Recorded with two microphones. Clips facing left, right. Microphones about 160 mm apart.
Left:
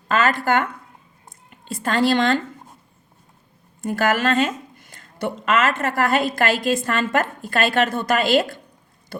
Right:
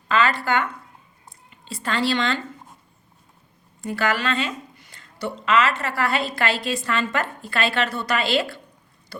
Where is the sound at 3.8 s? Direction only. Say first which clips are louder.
Left 4 dB; 45° left (ahead or behind).